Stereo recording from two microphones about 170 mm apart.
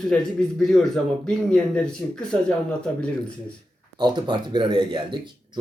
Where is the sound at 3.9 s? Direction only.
25° right (ahead or behind).